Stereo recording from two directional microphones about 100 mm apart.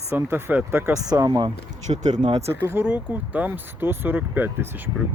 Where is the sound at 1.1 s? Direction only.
40° right (ahead or behind).